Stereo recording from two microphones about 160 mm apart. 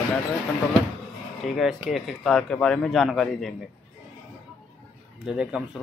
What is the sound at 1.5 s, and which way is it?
Speech, centre (ahead or behind).